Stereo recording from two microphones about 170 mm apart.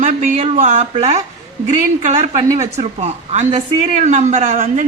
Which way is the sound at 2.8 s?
40° right (ahead or behind).